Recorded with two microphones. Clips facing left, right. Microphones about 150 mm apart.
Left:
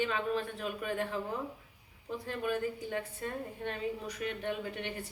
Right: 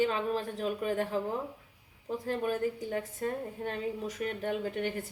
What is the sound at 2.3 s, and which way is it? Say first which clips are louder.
A woman's voice: right 3 dB; 35° right (ahead or behind).